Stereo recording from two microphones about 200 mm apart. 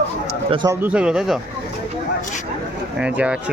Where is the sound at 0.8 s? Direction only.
5° right (ahead or behind).